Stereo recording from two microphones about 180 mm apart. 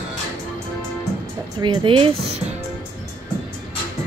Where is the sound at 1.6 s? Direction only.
25° right (ahead or behind).